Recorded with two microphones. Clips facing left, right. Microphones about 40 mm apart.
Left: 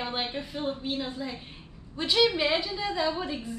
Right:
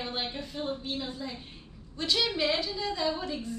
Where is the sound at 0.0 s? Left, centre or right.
Centre.